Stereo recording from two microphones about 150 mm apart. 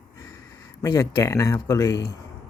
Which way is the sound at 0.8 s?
25° left (ahead or behind).